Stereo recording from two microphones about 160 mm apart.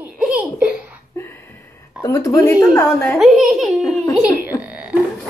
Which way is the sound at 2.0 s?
20° left (ahead or behind).